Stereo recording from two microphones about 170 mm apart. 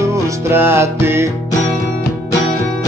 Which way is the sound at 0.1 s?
15° right (ahead or behind).